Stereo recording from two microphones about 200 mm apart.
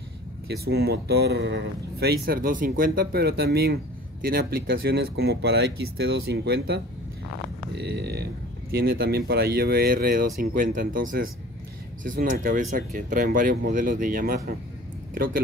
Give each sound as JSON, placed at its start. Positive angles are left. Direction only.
{"t": 0.5, "sound": "speech", "side_deg": -50}
{"t": 7.7, "sound": "a sound", "side_deg": -55}
{"t": 8.7, "sound": "speech", "side_deg": -50}